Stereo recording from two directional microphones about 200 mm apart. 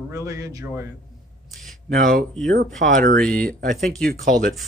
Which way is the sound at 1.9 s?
45° right (ahead or behind).